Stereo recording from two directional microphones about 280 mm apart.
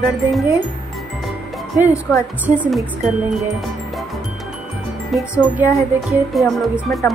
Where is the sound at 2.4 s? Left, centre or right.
Centre.